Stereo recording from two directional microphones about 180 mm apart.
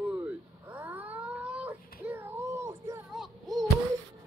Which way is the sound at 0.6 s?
10° right (ahead or behind).